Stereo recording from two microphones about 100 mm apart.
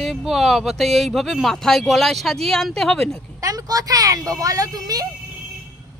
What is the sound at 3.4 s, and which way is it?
A woman's voice, 35° right (ahead or behind).